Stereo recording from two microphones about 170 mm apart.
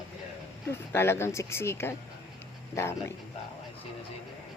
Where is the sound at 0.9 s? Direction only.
15° left (ahead or behind).